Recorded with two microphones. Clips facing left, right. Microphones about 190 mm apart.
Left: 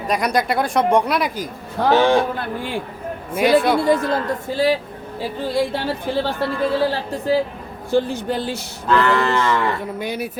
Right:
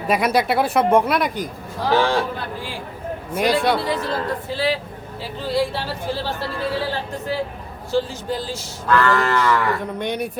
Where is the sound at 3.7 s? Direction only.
50° left (ahead or behind).